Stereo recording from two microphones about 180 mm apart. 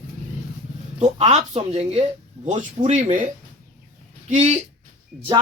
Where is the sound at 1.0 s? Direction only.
40° right (ahead or behind).